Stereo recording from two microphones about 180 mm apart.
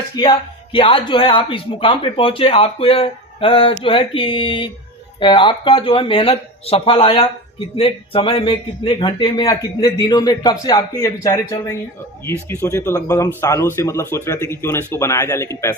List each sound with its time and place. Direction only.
0.2 s a man's voice: 30° left (ahead or behind)